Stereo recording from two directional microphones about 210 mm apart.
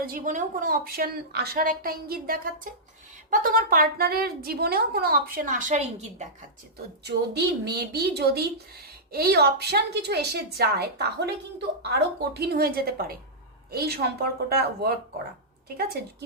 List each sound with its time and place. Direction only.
0.0 s a woman's voice: 40° right (ahead or behind)
7.0 s a woman's voice: 50° right (ahead or behind)